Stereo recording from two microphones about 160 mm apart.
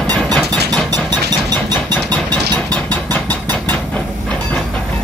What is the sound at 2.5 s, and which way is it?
Engine, 10° left (ahead or behind).